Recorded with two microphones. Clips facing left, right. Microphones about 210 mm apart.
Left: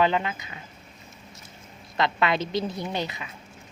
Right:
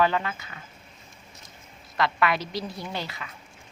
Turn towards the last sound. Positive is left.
turn(degrees=20)  # may be behind; listen again after turning